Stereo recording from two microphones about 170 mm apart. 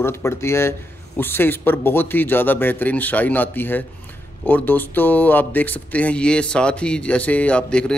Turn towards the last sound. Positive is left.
turn(degrees=5)  # may be behind; listen again after turning